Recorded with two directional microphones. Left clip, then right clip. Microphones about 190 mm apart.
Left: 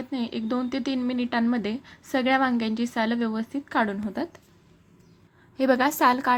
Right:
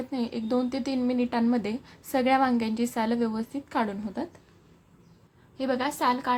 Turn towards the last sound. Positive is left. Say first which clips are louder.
# left 5 dB
turn(degrees=35)  # may be behind; listen again after turning